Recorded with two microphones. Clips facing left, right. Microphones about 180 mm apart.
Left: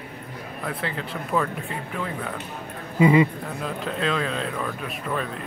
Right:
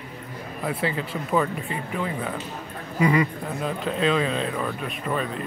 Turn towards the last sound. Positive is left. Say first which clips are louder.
# right 1 dB
turn(degrees=0)  # may be behind; listen again after turning